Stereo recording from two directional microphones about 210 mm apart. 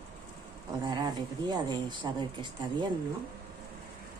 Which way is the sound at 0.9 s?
20° right (ahead or behind).